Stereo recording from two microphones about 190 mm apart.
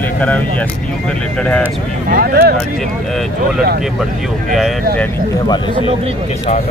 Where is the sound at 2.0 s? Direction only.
50° right (ahead or behind).